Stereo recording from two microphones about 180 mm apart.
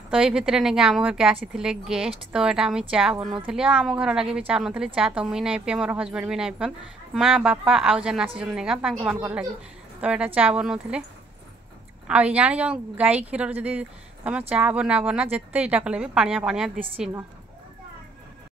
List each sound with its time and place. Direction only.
0.1 s a woman's voice: 5° right (ahead or behind)
12.1 s a woman's voice: 5° right (ahead or behind)